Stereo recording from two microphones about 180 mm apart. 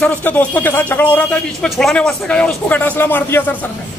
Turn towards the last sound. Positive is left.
turn(degrees=10)  # may be behind; listen again after turning